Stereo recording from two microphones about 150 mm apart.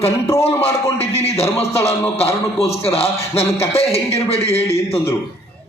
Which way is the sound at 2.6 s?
40° left (ahead or behind).